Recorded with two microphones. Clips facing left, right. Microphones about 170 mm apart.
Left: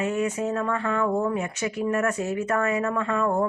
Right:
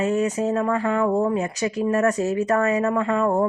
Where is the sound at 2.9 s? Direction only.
25° right (ahead or behind).